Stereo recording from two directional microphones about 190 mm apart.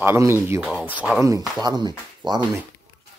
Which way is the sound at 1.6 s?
20° right (ahead or behind).